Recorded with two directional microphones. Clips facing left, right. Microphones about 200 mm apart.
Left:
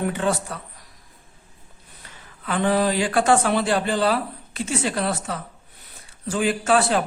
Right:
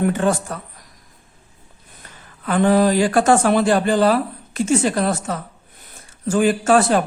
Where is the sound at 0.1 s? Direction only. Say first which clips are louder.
Right 5 dB; 45° right (ahead or behind).